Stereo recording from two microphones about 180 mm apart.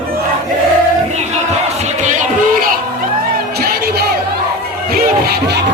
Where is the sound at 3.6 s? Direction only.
55° right (ahead or behind).